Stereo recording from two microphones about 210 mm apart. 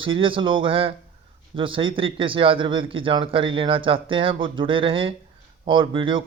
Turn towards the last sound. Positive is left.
turn(degrees=-25)  # may be behind; listen again after turning